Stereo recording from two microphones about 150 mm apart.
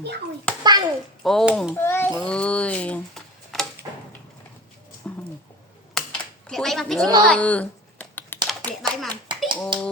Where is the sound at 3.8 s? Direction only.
25° right (ahead or behind).